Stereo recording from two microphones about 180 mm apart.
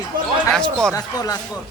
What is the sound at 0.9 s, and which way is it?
Speech, 20° left (ahead or behind).